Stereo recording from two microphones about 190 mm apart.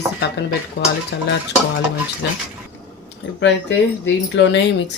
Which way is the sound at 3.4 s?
70° left (ahead or behind).